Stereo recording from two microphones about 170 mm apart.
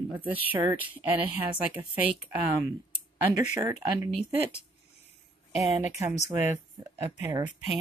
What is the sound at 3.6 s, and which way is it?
Speech, 15° right (ahead or behind).